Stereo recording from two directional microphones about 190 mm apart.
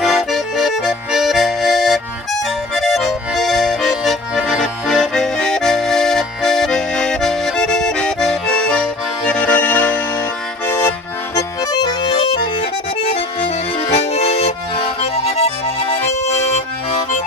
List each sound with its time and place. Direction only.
0.0 s accordion: centre (ahead or behind); by 16.0 s 30° left (ahead or behind)